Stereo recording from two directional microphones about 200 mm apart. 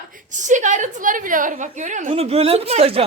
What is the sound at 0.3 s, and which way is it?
A woman's voice, 40° right (ahead or behind).